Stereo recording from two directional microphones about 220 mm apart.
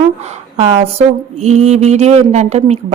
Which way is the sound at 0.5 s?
25° right (ahead or behind).